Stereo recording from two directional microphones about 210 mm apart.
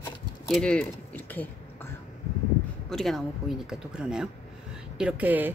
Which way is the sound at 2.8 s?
Centre (ahead or behind).